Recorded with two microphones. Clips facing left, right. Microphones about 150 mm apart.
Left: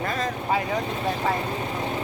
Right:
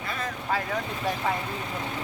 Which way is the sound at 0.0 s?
40° left (ahead or behind).